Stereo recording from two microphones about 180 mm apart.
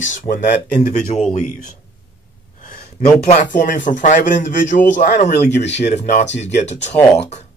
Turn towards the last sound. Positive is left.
turn(degrees=40)  # may be behind; listen again after turning